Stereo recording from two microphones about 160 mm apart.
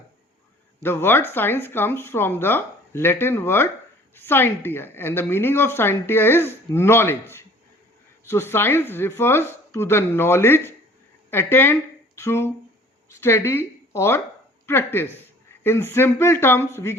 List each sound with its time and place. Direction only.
0.8 s a woman's voice: 15° left (ahead or behind)